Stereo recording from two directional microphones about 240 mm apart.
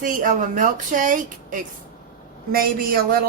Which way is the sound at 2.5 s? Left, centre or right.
Right.